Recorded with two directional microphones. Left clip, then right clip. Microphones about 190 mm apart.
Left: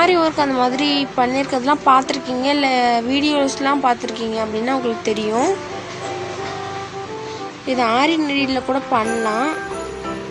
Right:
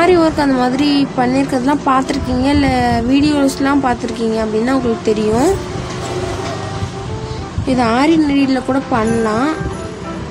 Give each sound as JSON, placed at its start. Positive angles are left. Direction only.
{"t": 0.0, "sound": "speech", "side_deg": 15}
{"t": 7.6, "sound": "speech", "side_deg": 10}